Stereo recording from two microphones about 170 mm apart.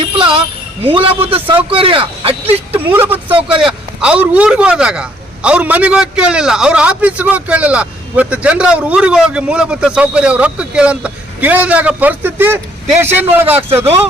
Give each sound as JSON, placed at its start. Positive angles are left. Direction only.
{"t": 0.0, "sound": "jingle bell", "side_deg": -30}
{"t": 0.9, "sound": "speech", "side_deg": -35}
{"t": 2.7, "sound": "a man's voice", "side_deg": -10}